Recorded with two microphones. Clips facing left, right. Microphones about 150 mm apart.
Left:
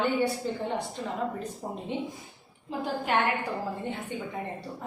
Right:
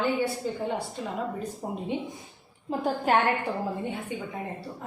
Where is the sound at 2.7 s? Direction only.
45° right (ahead or behind).